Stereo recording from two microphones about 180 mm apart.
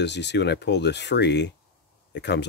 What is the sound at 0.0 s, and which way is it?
Speech, 75° left (ahead or behind).